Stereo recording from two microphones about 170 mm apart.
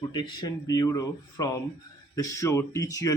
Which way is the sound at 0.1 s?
25° left (ahead or behind).